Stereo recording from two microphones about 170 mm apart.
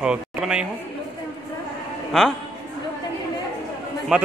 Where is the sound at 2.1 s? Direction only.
Centre (ahead or behind).